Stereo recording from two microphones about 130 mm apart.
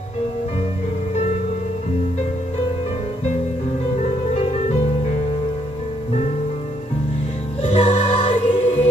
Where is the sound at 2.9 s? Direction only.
55° left (ahead or behind).